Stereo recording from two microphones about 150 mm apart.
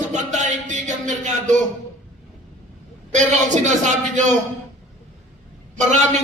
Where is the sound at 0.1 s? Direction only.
55° right (ahead or behind).